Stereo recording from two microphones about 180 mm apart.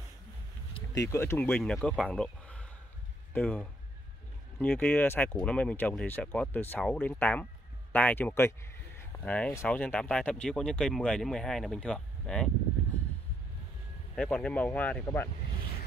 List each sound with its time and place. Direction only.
0.9 s speech: 15° left (ahead or behind)
14.1 s speech: 5° left (ahead or behind)